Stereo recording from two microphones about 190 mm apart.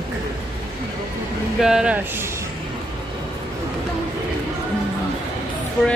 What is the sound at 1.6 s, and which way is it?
Speech, 5° right (ahead or behind).